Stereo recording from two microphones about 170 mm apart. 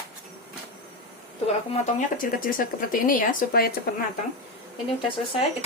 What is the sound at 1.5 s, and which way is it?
Speech, 50° left (ahead or behind).